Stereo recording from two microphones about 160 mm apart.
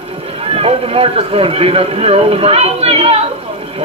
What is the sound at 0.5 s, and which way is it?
Speech, 35° right (ahead or behind).